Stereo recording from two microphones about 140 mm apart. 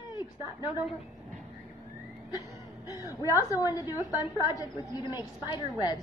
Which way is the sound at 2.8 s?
25° left (ahead or behind).